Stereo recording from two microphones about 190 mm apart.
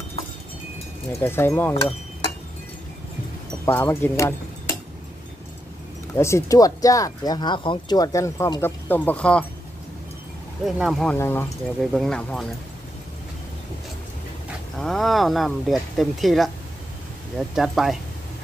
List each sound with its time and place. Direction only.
1.2 s speech: 10° left (ahead or behind)
3.6 s speech: 15° left (ahead or behind)
6.1 s speech: 15° left (ahead or behind)
10.6 s speech: centre (ahead or behind)
11.1 s speech: 10° left (ahead or behind)
11.8 s speech: centre (ahead or behind)
14.8 s speech: centre (ahead or behind)